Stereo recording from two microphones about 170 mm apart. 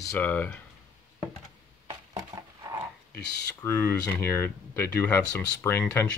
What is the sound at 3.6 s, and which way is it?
Speech, 10° left (ahead or behind).